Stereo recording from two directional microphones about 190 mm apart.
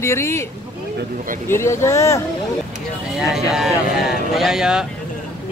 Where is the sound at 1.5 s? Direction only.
15° left (ahead or behind).